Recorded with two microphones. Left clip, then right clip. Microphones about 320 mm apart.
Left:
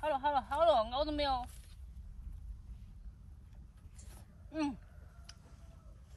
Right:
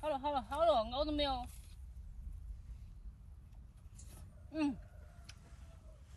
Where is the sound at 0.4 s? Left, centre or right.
Centre.